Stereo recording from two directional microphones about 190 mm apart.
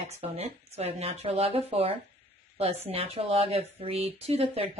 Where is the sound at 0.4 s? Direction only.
35° right (ahead or behind).